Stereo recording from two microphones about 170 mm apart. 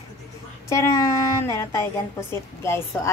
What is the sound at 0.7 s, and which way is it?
A woman's voice, 20° left (ahead or behind).